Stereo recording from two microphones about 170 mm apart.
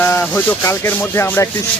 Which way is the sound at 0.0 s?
10° left (ahead or behind).